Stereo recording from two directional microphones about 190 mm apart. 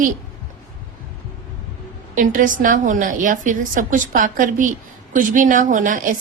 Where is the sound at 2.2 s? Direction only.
45° right (ahead or behind).